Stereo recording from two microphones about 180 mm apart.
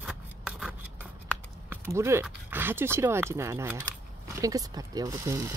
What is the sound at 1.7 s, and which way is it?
Speech, 15° right (ahead or behind).